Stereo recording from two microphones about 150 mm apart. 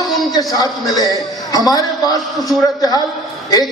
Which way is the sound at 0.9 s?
25° left (ahead or behind).